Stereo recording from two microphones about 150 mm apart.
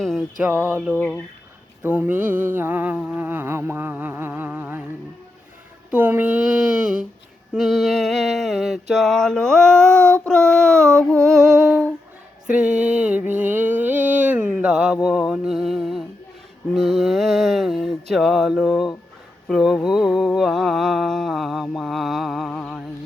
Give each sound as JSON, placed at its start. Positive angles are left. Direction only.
{"t": 0.0, "sound": "a sound", "side_deg": 0}
{"t": 0.4, "sound": "mantra", "side_deg": -15}
{"t": 0.9, "sound": "speech", "side_deg": 10}
{"t": 1.8, "sound": "mantra", "side_deg": -10}
{"t": 5.9, "sound": "mantra", "side_deg": -10}
{"t": 11.1, "sound": "humming", "side_deg": 0}
{"t": 12.5, "sound": "mantra", "side_deg": -10}
{"t": 19.5, "sound": "a sound", "side_deg": 0}